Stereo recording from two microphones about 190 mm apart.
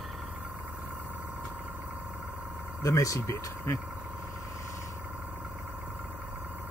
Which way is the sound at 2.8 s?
20° left (ahead or behind).